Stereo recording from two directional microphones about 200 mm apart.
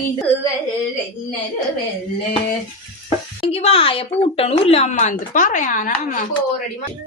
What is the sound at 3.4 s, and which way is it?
Speech, 30° left (ahead or behind).